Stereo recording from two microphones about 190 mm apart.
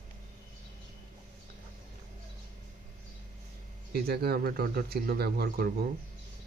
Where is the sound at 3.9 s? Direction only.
55° right (ahead or behind).